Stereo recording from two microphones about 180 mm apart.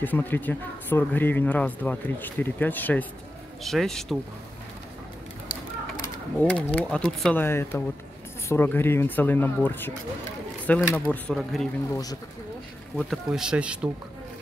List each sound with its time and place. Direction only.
0.0 s speech: 10° left (ahead or behind)
6.4 s speech: 5° left (ahead or behind)
11.9 s speech: 20° left (ahead or behind)
12.9 s speech: 5° right (ahead or behind)